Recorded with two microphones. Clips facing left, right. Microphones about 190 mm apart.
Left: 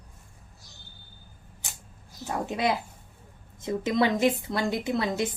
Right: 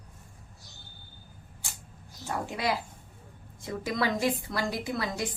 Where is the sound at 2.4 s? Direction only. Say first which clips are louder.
Left 4 dB; 20° left (ahead or behind).